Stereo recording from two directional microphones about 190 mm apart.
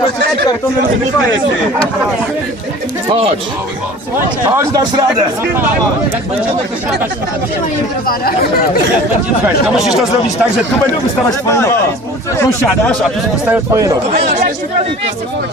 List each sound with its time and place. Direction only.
4.4 s a man's voice: 15° right (ahead or behind)
9.7 s speech: centre (ahead or behind)
11.3 s speech: 15° left (ahead or behind)
13.5 s speech: 15° right (ahead or behind)